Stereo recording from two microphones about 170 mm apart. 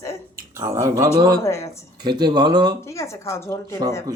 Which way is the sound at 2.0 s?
25° right (ahead or behind).